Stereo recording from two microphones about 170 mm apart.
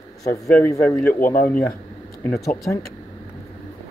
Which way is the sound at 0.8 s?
5° left (ahead or behind).